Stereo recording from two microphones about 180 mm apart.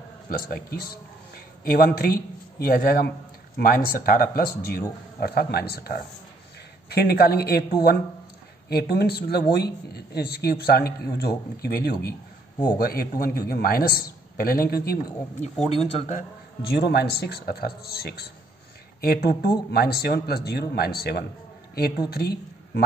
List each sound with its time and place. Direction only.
0.3 s a man's voice: 55° left (ahead or behind)
15.7 s speech: 35° left (ahead or behind)
16.7 s a man's voice: 65° left (ahead or behind)